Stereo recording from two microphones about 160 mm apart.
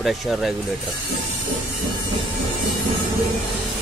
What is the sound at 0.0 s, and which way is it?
Speech, centre (ahead or behind).